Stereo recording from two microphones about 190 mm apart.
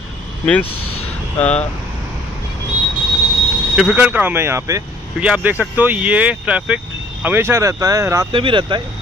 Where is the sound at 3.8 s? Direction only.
5° right (ahead or behind); by 8.8 s 25° right (ahead or behind).